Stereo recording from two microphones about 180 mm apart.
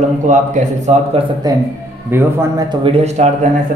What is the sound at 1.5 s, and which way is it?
A man's voice, 20° right (ahead or behind).